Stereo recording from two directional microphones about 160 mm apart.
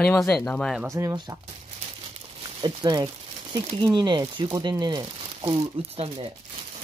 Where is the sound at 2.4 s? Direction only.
30° right (ahead or behind).